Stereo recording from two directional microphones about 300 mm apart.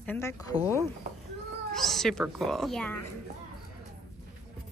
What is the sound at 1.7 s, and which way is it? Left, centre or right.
Speech, centre.